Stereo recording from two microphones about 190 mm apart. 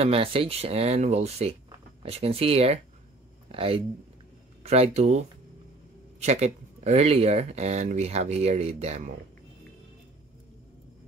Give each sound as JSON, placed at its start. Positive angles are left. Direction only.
{"t": 0.0, "sound": "speech", "side_deg": -30}